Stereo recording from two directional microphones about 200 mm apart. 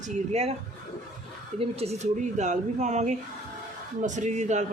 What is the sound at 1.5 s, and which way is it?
A woman's voice, 30° right (ahead or behind).